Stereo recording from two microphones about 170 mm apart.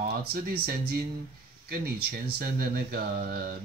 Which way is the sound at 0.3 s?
65° right (ahead or behind).